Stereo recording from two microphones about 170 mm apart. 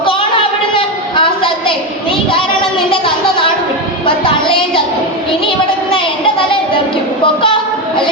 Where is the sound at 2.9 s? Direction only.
30° left (ahead or behind).